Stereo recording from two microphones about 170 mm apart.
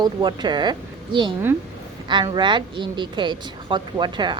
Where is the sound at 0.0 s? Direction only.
25° right (ahead or behind).